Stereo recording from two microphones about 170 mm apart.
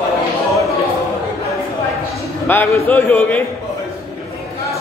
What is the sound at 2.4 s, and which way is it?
Speech, 10° left (ahead or behind).